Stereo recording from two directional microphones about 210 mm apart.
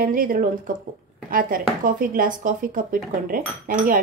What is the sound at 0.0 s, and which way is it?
Speech, 40° right (ahead or behind).